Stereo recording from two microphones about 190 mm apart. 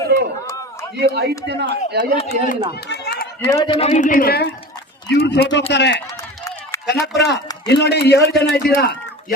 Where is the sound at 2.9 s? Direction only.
60° left (ahead or behind).